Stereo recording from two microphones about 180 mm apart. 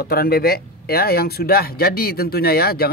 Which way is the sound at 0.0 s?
55° left (ahead or behind).